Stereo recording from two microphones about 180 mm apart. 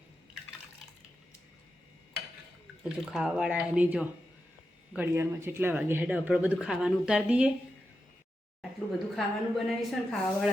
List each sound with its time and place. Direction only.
2.9 s a woman's voice: 5° right (ahead or behind)
9.1 s a woman's voice: centre (ahead or behind)